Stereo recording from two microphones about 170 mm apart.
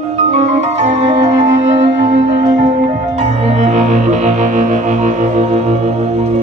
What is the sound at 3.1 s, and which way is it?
Music, 40° right (ahead or behind).